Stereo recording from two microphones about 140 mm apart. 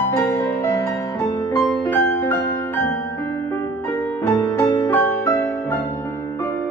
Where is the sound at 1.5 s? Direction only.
15° left (ahead or behind).